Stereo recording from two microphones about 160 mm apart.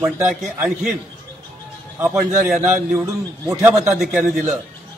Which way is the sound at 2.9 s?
20° right (ahead or behind).